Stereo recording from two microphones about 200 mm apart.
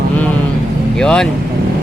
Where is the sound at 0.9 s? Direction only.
5° left (ahead or behind).